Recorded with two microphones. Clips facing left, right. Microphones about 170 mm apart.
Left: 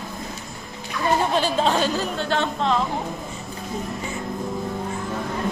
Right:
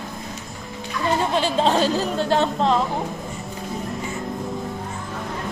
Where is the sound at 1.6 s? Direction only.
35° right (ahead or behind).